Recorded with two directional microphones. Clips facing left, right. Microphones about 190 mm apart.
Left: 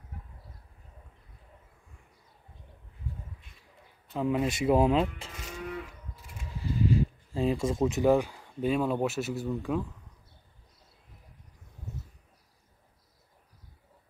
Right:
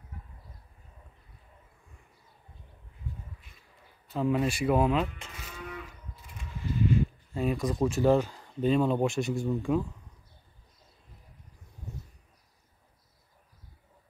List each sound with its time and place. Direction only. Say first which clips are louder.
4.2 s speech: right 1 dB; 15° left (ahead or behind); by 5.3 s 30° left (ahead or behind)
6.6 s speech: even; 35° left (ahead or behind); by 9.8 s 5° left (ahead or behind)